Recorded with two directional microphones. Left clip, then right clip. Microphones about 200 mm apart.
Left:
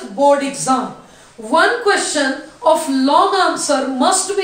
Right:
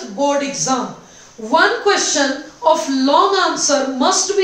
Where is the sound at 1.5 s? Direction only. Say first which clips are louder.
Even; 5° left (ahead or behind).